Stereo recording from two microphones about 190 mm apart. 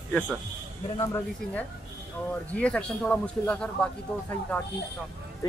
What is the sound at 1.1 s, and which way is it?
Speech, 10° left (ahead or behind).